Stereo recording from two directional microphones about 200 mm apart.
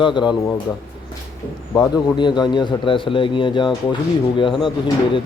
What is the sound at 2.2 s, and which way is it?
Speech, 20° left (ahead or behind).